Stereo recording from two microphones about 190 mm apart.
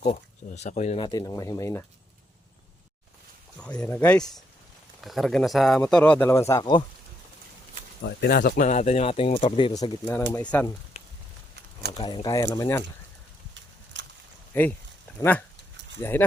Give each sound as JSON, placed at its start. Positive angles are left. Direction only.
{"t": 0.0, "sound": "speech", "side_deg": 35}
{"t": 1.0, "sound": "speech", "side_deg": 20}
{"t": 3.6, "sound": "speech", "side_deg": 5}
{"t": 8.0, "sound": "speech", "side_deg": 55}
{"t": 10.1, "sound": "speech", "side_deg": 10}
{"t": 11.9, "sound": "speech", "side_deg": 25}
{"t": 14.0, "sound": "a sound", "side_deg": -70}
{"t": 14.5, "sound": "speech", "side_deg": 10}